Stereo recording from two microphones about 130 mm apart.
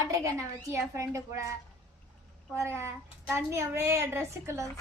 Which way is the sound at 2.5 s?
20° right (ahead or behind).